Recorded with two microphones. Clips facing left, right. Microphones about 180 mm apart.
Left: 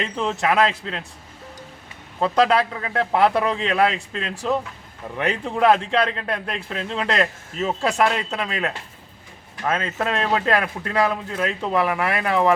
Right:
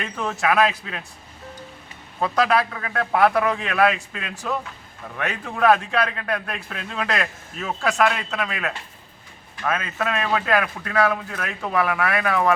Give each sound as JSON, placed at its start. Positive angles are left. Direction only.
{"t": 0.0, "sound": "a man's voice", "side_deg": 25}
{"t": 2.2, "sound": "a man's voice", "side_deg": 25}
{"t": 5.1, "sound": "a man's voice", "side_deg": 25}